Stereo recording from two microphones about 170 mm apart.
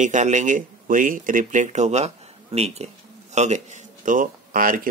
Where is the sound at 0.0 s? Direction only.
45° right (ahead or behind).